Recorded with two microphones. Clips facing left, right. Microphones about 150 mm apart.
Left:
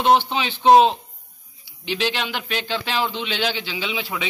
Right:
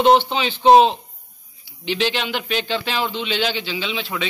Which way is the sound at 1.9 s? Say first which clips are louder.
Right 2 dB; 10° left (ahead or behind).